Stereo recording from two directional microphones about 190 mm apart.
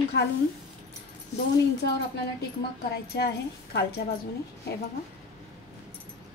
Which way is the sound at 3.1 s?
60° left (ahead or behind).